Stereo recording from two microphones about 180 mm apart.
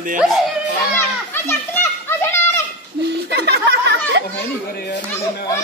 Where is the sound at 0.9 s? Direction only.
15° left (ahead or behind).